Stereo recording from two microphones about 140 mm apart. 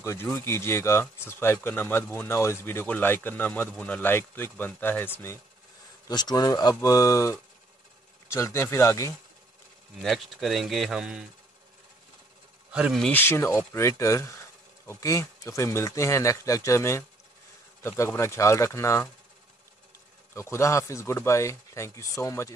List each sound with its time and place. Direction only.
0.0 s speech: 20° left (ahead or behind)
6.0 s speech: 30° left (ahead or behind)
10.0 s speech: centre (ahead or behind)
13.1 s speech: 15° left (ahead or behind)
20.3 s speech: 20° left (ahead or behind)